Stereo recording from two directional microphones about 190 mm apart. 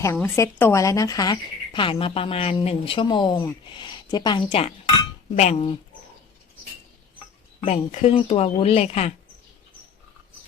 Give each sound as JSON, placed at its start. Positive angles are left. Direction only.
{"t": 0.0, "sound": "speech", "side_deg": 15}
{"t": 5.4, "sound": "speech", "side_deg": 35}
{"t": 7.6, "sound": "speech", "side_deg": 35}